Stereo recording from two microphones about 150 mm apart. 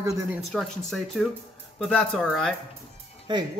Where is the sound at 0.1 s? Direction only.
Centre (ahead or behind).